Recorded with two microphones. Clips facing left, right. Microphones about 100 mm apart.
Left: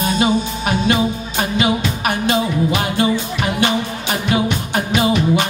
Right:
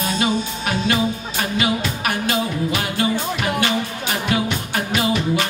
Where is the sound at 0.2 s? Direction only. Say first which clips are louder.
Left 4 dB; 20° left (ahead or behind).